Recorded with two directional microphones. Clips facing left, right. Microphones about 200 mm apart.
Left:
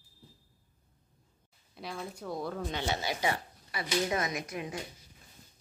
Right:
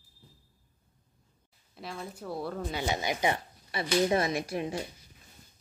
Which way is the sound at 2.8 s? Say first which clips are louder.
Right 4 dB; 15° right (ahead or behind).